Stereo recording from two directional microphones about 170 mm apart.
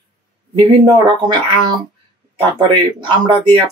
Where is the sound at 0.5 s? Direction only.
25° right (ahead or behind).